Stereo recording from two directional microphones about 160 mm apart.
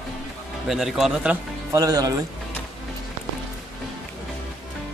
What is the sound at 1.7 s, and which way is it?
Speech, 20° right (ahead or behind).